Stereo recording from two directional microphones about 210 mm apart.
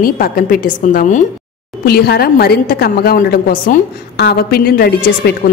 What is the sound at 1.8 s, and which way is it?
A woman's voice, 45° left (ahead or behind).